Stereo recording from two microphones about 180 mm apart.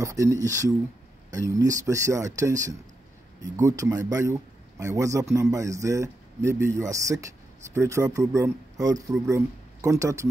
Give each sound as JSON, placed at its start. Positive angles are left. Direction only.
{"t": 0.0, "sound": "a man's voice", "side_deg": -15}